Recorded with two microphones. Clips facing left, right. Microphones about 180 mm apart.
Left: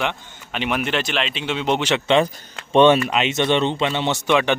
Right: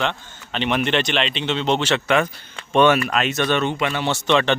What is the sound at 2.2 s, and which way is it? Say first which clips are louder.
Speech: left 3 dB; 30° left (ahead or behind).